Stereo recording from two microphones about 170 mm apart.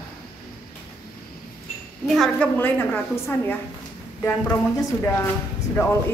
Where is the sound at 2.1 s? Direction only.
5° left (ahead or behind).